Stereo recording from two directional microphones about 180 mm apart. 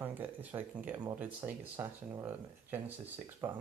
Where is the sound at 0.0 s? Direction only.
10° right (ahead or behind).